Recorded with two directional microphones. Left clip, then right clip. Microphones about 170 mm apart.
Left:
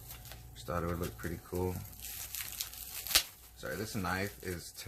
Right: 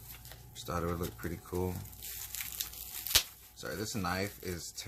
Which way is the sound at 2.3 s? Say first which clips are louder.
Right 1 dB; 15° right (ahead or behind).